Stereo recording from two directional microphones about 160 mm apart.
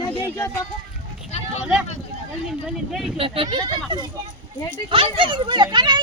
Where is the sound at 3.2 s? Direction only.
35° right (ahead or behind).